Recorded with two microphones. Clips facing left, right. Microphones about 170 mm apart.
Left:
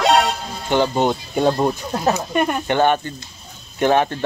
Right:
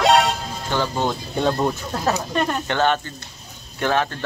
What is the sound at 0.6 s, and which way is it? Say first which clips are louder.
Speech: left 5 dB; 20° left (ahead or behind).